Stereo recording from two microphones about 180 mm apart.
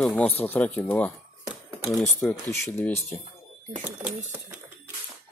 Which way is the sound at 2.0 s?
15° left (ahead or behind).